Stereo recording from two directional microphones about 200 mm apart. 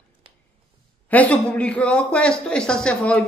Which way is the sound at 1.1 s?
5° left (ahead or behind).